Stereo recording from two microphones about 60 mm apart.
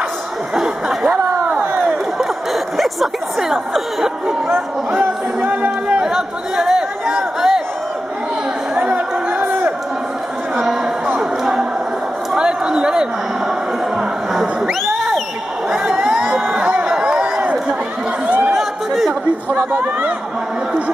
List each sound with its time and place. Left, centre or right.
0.6 s speech: centre
2.1 s a sound: centre
5.4 s music: right
6.0 s chatter: centre
8.7 s chatter: centre
10.5 s chatter: centre
11.1 s a sound: centre
13.9 s music: centre
15.7 s crowd: centre
16.4 s crowd: right
18.2 s a sound: right
18.5 s a sound: centre